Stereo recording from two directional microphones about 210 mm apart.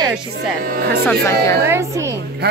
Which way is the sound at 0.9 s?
10° left (ahead or behind).